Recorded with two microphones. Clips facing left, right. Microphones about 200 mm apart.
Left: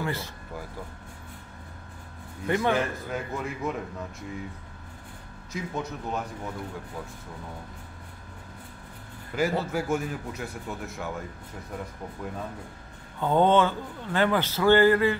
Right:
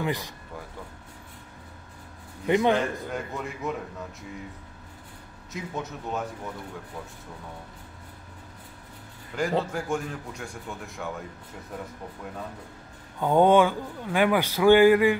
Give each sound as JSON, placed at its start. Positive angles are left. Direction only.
{"t": 0.0, "sound": "speech", "side_deg": -15}
{"t": 2.4, "sound": "a man's voice", "side_deg": -20}
{"t": 2.7, "sound": "speech", "side_deg": 0}
{"t": 5.5, "sound": "speech", "side_deg": 0}
{"t": 9.3, "sound": "speech", "side_deg": 5}
{"t": 13.2, "sound": "a man's voice", "side_deg": -10}